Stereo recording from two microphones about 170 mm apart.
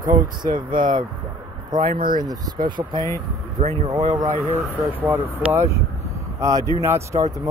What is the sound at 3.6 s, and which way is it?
Speech, 40° right (ahead or behind).